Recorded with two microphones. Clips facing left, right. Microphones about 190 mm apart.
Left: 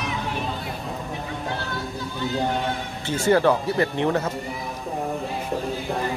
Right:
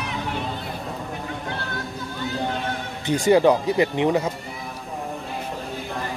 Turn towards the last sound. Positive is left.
turn(degrees=-15)  # may be behind; listen again after turning